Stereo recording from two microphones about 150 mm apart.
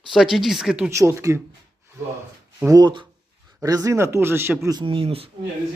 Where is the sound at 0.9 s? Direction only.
20° right (ahead or behind).